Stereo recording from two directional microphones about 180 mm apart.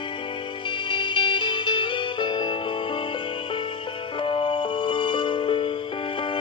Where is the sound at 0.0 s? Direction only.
25° left (ahead or behind).